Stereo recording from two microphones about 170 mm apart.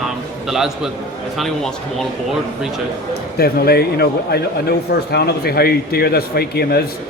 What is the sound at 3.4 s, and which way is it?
A man's voice, 65° left (ahead or behind).